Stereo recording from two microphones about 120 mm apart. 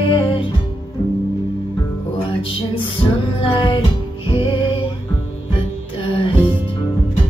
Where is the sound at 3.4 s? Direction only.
45° left (ahead or behind).